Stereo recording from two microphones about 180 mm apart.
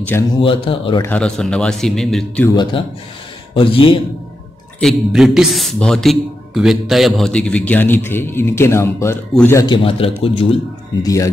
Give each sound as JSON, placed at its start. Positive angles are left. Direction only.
{"t": 0.4, "sound": "speech", "side_deg": 30}
{"t": 1.0, "sound": "a man's voice", "side_deg": 5}
{"t": 2.4, "sound": "speech", "side_deg": 25}
{"t": 4.7, "sound": "a man's voice", "side_deg": 0}
{"t": 9.7, "sound": "a man's voice", "side_deg": 30}
{"t": 11.0, "sound": "speech", "side_deg": 20}